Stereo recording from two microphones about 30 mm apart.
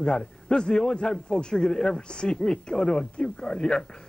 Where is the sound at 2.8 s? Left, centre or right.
Left.